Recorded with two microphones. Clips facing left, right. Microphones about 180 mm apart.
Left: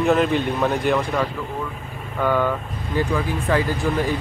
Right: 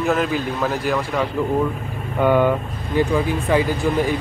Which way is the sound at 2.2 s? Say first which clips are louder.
Right 4 dB; 15° right (ahead or behind).